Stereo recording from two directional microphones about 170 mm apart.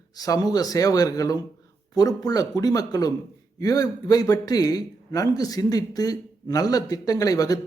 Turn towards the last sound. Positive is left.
turn(degrees=20)  # may be behind; listen again after turning